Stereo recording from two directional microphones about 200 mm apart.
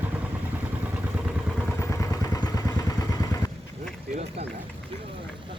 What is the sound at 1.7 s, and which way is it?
Vehicle, 15° left (ahead or behind).